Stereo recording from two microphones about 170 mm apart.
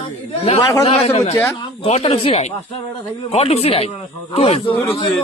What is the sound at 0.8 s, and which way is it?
A man's voice, 35° left (ahead or behind).